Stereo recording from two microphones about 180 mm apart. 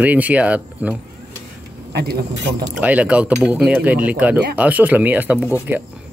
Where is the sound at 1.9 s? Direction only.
65° right (ahead or behind).